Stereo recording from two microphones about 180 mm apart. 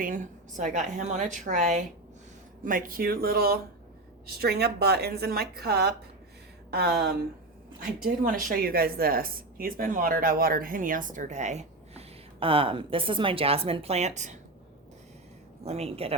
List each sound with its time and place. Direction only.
0.0 s a woman's voice: 45° right (ahead or behind)
15.6 s a woman's voice: 35° right (ahead or behind)